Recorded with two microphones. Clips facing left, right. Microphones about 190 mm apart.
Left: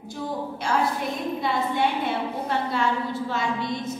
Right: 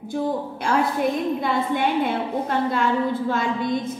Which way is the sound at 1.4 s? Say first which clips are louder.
Right 2 dB; 50° right (ahead or behind).